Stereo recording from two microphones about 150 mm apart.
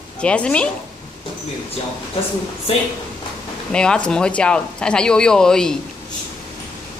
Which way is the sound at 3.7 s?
5° left (ahead or behind).